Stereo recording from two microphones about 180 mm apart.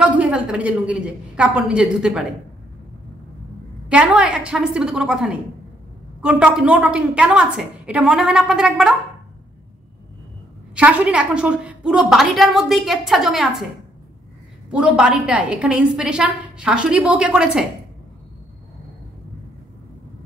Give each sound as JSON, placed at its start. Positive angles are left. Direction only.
{"t": 0.0, "sound": "a woman's voice", "side_deg": -5}
{"t": 3.9, "sound": "a woman's voice", "side_deg": -5}
{"t": 10.7, "sound": "a woman's voice", "side_deg": -5}
{"t": 14.7, "sound": "a woman's voice", "side_deg": -5}